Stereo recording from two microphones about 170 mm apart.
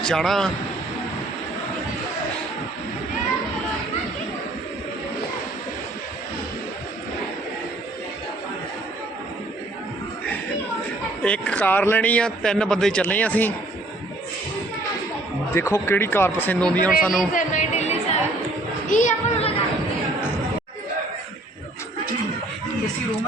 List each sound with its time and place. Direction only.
0.0 s a man's voice: 5° left (ahead or behind)
11.2 s speech: 5° left (ahead or behind)
15.5 s a man's voice: 15° left (ahead or behind); by 17.2 s centre (ahead or behind)
17.3 s chatter: 45° left (ahead or behind)
18.9 s a sound: 50° left (ahead or behind)